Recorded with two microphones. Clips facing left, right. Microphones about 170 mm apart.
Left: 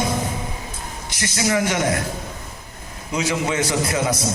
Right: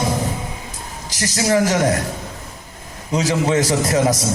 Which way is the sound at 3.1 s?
40° right (ahead or behind).